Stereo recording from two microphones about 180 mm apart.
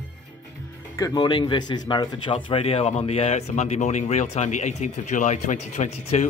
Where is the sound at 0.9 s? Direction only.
20° left (ahead or behind).